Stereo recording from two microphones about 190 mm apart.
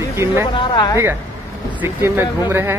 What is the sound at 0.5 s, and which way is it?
Speech, 25° left (ahead or behind).